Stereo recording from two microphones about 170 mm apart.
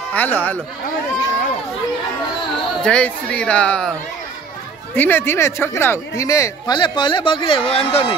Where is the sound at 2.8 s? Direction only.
5° left (ahead or behind).